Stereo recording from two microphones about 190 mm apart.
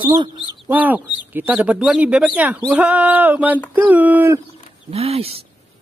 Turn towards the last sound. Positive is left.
turn(degrees=-30)  # may be behind; listen again after turning